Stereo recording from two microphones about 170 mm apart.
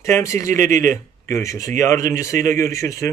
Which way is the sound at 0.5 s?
50° right (ahead or behind).